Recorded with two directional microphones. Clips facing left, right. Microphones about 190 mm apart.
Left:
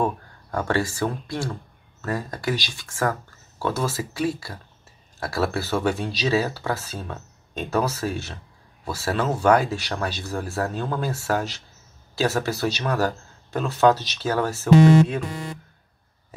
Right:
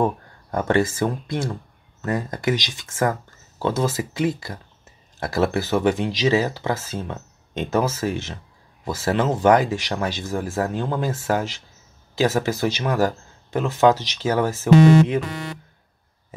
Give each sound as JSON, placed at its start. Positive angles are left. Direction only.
{"t": 0.0, "sound": "speech", "side_deg": -20}
{"t": 15.2, "sound": "speech", "side_deg": -90}